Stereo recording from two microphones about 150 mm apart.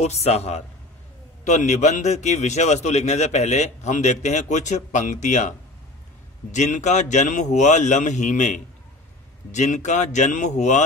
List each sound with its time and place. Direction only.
0.0 s a man's voice: 45° left (ahead or behind)
6.5 s a man's voice: 55° left (ahead or behind)